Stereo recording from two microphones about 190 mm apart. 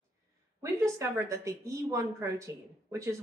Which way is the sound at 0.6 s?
15° right (ahead or behind).